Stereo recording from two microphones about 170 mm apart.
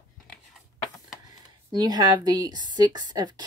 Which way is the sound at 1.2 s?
25° right (ahead or behind).